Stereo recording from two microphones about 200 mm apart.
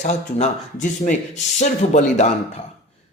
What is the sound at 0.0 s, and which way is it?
Speech, 40° left (ahead or behind).